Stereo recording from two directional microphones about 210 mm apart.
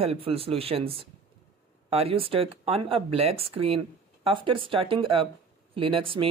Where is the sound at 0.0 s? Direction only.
30° right (ahead or behind).